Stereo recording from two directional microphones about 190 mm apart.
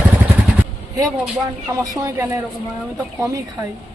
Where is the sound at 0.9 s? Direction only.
15° right (ahead or behind).